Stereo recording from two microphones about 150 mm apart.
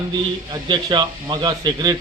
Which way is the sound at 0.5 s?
30° right (ahead or behind).